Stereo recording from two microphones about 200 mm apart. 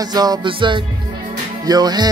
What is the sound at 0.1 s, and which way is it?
Music, 20° right (ahead or behind).